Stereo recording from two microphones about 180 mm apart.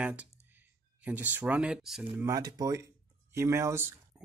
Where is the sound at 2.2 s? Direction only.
20° right (ahead or behind).